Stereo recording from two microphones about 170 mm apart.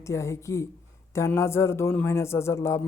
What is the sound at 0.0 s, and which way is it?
A man's voice, 15° left (ahead or behind).